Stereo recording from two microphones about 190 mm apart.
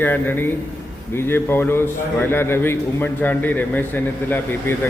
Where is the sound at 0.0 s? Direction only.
10° left (ahead or behind).